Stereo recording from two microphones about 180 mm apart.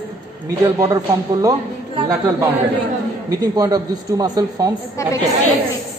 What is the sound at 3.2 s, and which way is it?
A man's voice, 20° right (ahead or behind).